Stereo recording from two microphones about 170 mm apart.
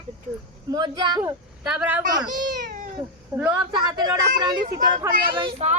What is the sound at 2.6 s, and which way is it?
Cat, 55° right (ahead or behind).